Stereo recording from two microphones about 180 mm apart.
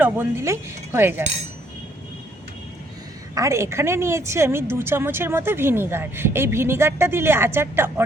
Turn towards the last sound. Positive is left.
turn(degrees=-10)  # may be behind; listen again after turning